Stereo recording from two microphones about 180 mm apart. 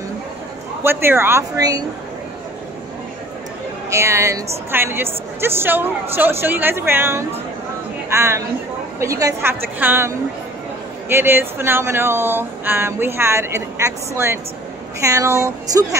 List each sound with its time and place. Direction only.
0.8 s speech: 10° right (ahead or behind)
3.9 s a woman's voice: 15° right (ahead or behind)